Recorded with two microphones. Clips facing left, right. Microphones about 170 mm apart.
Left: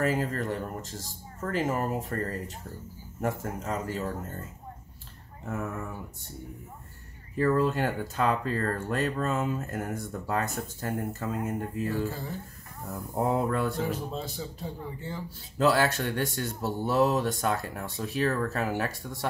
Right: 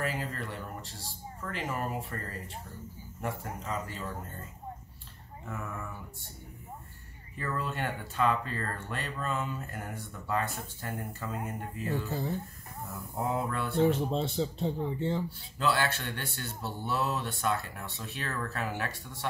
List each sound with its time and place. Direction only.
0.0 s speech: 45° left (ahead or behind)
3.6 s speech: 45° left (ahead or behind)
5.5 s speech: 40° left (ahead or behind)
7.3 s speech: 35° left (ahead or behind)
12.1 s speech: 20° right (ahead or behind)
13.1 s speech: 40° left (ahead or behind)
13.7 s speech: 30° right (ahead or behind)
15.6 s speech: 40° left (ahead or behind)